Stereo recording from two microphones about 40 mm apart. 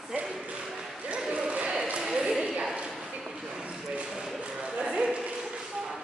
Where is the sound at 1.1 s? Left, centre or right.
Right; by 2.8 s centre.